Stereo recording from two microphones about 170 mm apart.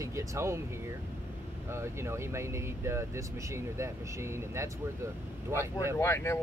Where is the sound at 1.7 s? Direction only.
15° right (ahead or behind).